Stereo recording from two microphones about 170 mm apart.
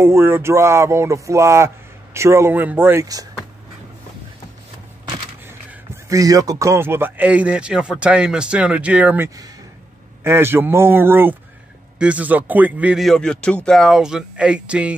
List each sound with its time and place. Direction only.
0.0 s speech: 15° right (ahead or behind)
5.7 s speech: 20° right (ahead or behind)